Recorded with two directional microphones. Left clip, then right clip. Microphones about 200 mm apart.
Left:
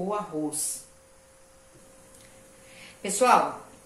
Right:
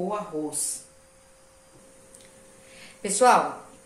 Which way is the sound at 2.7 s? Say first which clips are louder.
Right 2 dB; 15° right (ahead or behind).